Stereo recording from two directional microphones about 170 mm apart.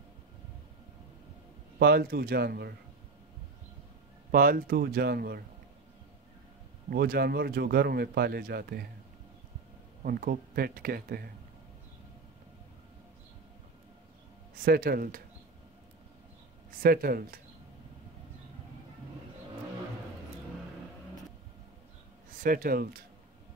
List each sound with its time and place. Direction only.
1.8 s speech: 65° right (ahead or behind)
4.3 s speech: 55° right (ahead or behind)
6.9 s speech: 65° right (ahead or behind)
10.0 s speech: 60° right (ahead or behind)
14.6 s speech: 60° right (ahead or behind)
16.7 s speech: 60° right (ahead or behind)
22.3 s speech: 55° right (ahead or behind)